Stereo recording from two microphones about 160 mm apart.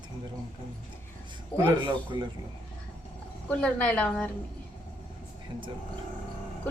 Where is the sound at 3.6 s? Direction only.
5° left (ahead or behind).